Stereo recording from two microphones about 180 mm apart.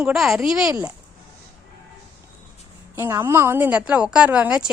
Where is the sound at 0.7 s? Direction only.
20° right (ahead or behind).